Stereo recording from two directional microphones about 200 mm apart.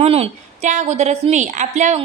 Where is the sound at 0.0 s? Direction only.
30° right (ahead or behind).